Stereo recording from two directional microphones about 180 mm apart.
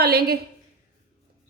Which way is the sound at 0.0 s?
60° right (ahead or behind).